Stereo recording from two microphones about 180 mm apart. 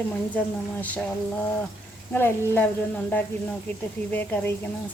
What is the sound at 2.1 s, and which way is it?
Speech, 10° left (ahead or behind).